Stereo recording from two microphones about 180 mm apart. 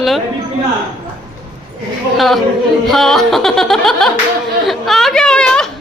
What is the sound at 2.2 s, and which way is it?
Music, centre (ahead or behind).